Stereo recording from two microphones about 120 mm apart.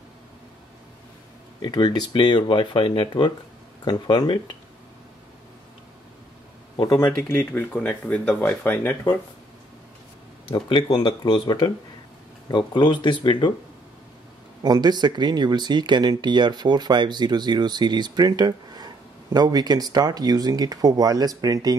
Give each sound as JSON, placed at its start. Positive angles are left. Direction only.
{"t": 1.6, "sound": "speech", "side_deg": 35}
{"t": 6.8, "sound": "speech", "side_deg": 30}
{"t": 7.1, "sound": "speech", "side_deg": 15}
{"t": 10.5, "sound": "speech", "side_deg": 40}
{"t": 14.6, "sound": "speech", "side_deg": -35}